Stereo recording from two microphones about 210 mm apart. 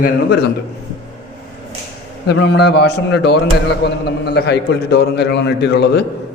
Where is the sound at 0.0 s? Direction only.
50° left (ahead or behind).